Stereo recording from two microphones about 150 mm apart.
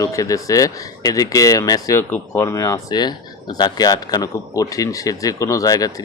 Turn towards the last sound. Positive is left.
turn(degrees=25)  # may be behind; listen again after turning